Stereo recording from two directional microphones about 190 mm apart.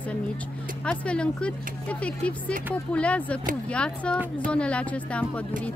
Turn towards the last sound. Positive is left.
turn(degrees=5)  # may be behind; listen again after turning